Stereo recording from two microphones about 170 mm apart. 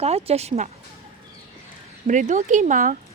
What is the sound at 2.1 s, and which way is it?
Speech, 45° right (ahead or behind).